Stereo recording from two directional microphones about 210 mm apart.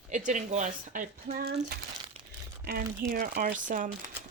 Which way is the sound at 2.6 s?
45° right (ahead or behind).